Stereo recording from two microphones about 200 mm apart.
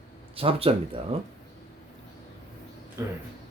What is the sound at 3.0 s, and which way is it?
Speech, 15° right (ahead or behind).